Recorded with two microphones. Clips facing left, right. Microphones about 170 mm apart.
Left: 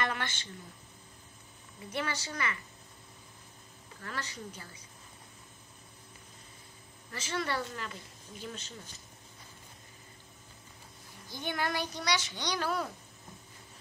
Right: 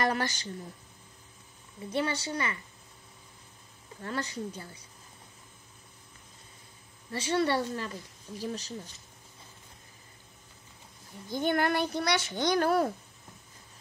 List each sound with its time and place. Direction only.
0.0 s a sound: 40° right (ahead or behind)
1.9 s a woman's voice: 30° right (ahead or behind)
4.0 s a woman's voice: 30° right (ahead or behind)
7.1 s a woman's voice: 30° right (ahead or behind)
11.2 s a child's voice: 55° right (ahead or behind)